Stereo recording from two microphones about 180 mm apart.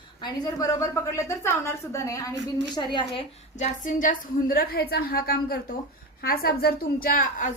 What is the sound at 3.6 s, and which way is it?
A woman's voice, 45° left (ahead or behind).